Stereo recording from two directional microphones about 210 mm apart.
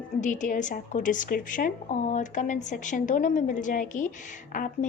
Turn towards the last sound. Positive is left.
turn(degrees=40)  # may be behind; listen again after turning